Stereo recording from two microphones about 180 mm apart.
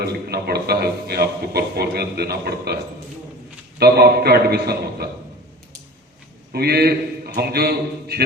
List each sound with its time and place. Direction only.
0.0 s a man's voice: 60° right (ahead or behind)
3.8 s a man's voice: 60° right (ahead or behind)
6.5 s a man's voice: 60° right (ahead or behind)